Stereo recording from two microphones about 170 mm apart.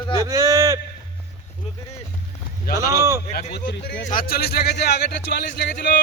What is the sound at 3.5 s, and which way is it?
A man's voice, 70° left (ahead or behind).